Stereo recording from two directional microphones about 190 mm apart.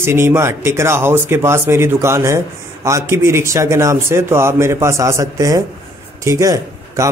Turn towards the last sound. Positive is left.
turn(degrees=-15)  # may be behind; listen again after turning